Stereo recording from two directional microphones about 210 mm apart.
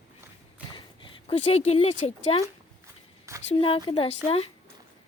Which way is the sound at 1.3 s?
30° left (ahead or behind).